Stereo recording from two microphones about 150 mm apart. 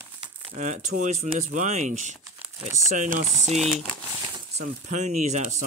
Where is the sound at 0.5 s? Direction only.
50° right (ahead or behind).